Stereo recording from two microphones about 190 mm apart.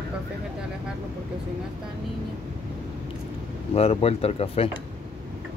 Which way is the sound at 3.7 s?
30° left (ahead or behind).